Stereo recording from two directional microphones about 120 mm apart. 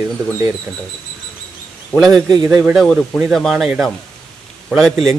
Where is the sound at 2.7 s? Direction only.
Centre (ahead or behind).